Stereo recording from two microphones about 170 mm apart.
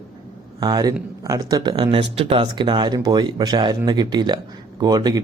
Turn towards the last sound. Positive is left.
turn(degrees=-25)  # may be behind; listen again after turning